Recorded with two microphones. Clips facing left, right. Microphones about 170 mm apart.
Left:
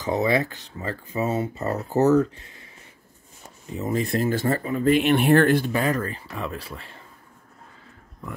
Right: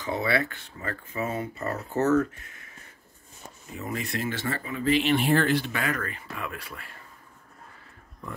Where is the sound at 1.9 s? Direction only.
35° left (ahead or behind).